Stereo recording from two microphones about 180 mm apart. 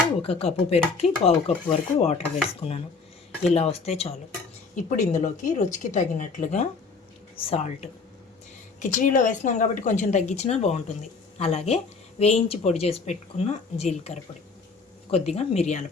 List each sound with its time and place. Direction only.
0.2 s a woman's voice: 35° left (ahead or behind)